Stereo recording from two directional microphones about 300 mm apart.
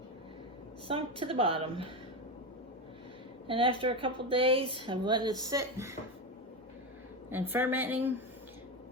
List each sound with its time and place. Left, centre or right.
0.9 s speech: centre
3.4 s speech: centre
7.3 s speech: centre